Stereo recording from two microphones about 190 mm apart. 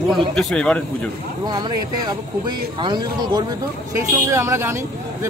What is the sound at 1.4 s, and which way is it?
A man's voice, 20° right (ahead or behind).